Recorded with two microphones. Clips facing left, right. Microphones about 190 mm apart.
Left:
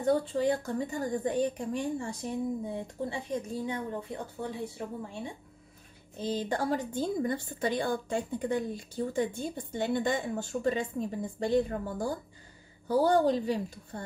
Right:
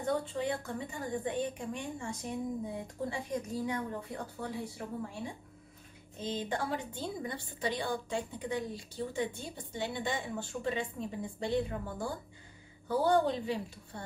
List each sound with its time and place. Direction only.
0.0 s a woman's voice: 35° left (ahead or behind)
2.7 s speech: 25° left (ahead or behind)
6.1 s a woman's voice: 35° left (ahead or behind)